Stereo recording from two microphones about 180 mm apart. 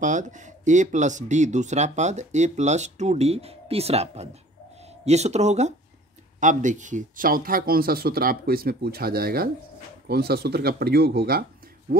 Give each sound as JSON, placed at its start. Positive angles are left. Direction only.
{"t": 0.0, "sound": "speech", "side_deg": -45}